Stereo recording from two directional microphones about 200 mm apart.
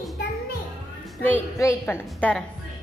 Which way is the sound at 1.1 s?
10° left (ahead or behind).